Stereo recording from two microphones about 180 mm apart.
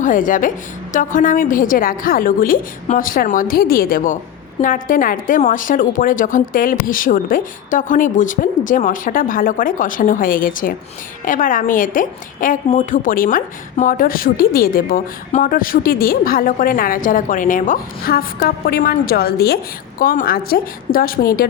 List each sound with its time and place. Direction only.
0.0 s a woman's voice: 45° left (ahead or behind)